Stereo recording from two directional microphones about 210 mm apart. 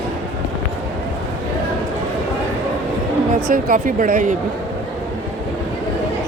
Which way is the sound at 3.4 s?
40° right (ahead or behind).